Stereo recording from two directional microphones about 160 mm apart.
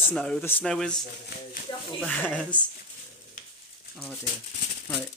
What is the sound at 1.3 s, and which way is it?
Speech, 85° left.